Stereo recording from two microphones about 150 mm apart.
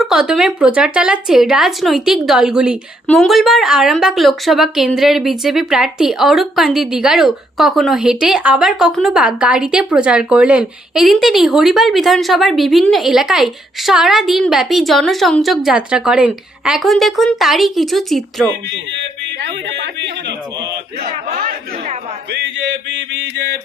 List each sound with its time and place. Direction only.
0.0 s a woman's voice: 5° right (ahead or behind)
21.0 s speech: 65° right (ahead or behind)